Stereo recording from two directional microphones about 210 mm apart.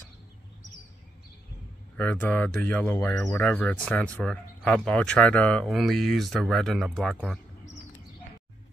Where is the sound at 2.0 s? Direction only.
5° left (ahead or behind).